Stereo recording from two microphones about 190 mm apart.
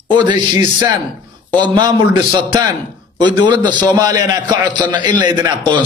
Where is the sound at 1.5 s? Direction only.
25° right (ahead or behind).